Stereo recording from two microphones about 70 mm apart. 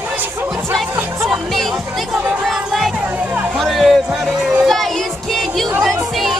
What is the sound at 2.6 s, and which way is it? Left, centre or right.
Music, centre.